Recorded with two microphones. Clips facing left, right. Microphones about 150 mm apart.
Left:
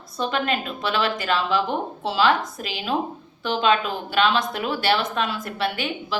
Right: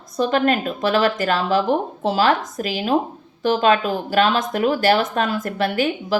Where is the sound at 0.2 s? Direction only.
45° right (ahead or behind).